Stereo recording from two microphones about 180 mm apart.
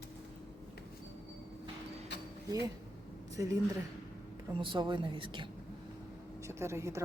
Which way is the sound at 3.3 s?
15° right (ahead or behind).